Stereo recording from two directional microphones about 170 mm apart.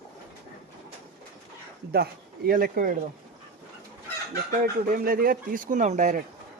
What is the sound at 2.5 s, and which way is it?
Speech, 55° right (ahead or behind).